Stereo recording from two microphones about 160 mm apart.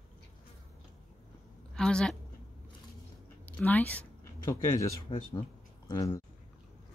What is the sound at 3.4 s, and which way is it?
Speech, 10° left (ahead or behind).